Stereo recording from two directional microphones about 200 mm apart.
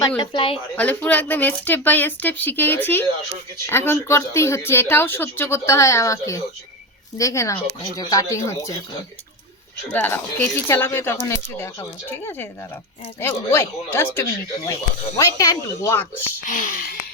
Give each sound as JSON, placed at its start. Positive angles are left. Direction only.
{"t": 0.2, "sound": "a woman's voice", "side_deg": 25}
{"t": 0.8, "sound": "speech", "side_deg": 5}
{"t": 9.9, "sound": "speech", "side_deg": 10}
{"t": 16.5, "sound": "speech", "side_deg": 45}